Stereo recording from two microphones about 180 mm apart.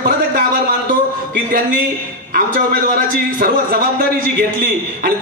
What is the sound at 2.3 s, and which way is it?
Speech, 55° right (ahead or behind).